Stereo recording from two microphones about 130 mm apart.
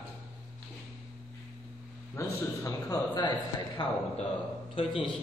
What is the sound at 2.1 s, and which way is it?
A man's voice, 20° left (ahead or behind).